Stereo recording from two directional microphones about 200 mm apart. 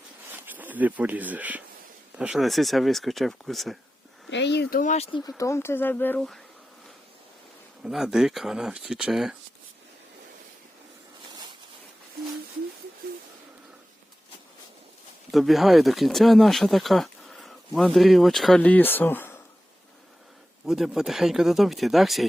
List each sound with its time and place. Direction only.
0.3 s speech: 10° right (ahead or behind)
4.3 s speech: 60° left (ahead or behind); by 5.0 s 40° left (ahead or behind)
5.4 s speech: 15° left (ahead or behind)
7.9 s speech: centre (ahead or behind)
15.3 s speech: centre (ahead or behind)
20.7 s speech: centre (ahead or behind)